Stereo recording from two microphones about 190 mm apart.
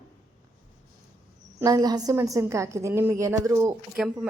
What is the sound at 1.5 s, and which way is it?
A woman's voice, 20° right (ahead or behind).